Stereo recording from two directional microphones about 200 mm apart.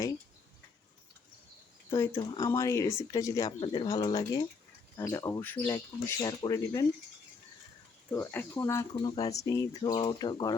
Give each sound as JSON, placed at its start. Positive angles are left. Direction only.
{"t": 2.1, "sound": "speech", "side_deg": 20}
{"t": 8.1, "sound": "speech", "side_deg": 10}